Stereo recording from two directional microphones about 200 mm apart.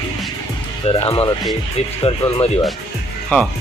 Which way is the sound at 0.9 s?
30° left (ahead or behind).